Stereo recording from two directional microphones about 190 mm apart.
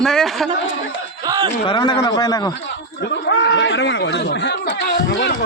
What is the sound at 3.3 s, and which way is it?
Speech, 75° left (ahead or behind).